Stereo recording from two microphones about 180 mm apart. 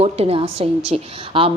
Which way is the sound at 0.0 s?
35° right (ahead or behind).